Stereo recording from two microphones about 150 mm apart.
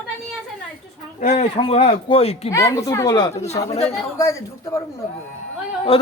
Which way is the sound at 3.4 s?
45° left (ahead or behind).